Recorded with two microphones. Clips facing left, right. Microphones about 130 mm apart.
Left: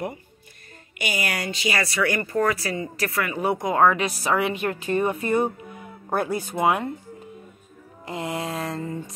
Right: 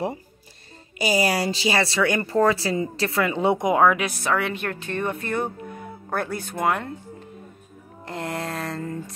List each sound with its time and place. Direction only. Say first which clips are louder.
0.9 s speech: right 7 dB; 35° right (ahead or behind); by 6.9 s 5° left (ahead or behind)
8.0 s music: left 1 dB; 5° left (ahead or behind)